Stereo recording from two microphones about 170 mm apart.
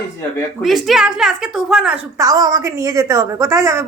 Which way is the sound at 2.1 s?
20° right (ahead or behind).